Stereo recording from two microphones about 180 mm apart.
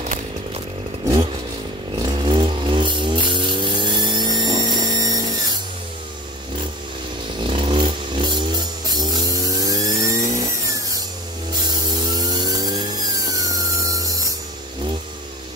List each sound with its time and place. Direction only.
2.0 s vehicle: 25° right (ahead or behind)
7.4 s music: 30° right (ahead or behind)
11.6 s a sound: 20° right (ahead or behind)
13.3 s tools: 20° right (ahead or behind)